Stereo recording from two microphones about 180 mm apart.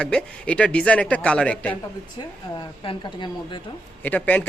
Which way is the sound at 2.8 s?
25° left (ahead or behind).